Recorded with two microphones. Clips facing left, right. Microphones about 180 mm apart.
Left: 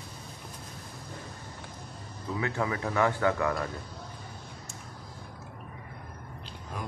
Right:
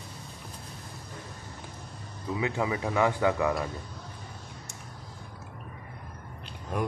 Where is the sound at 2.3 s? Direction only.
15° right (ahead or behind).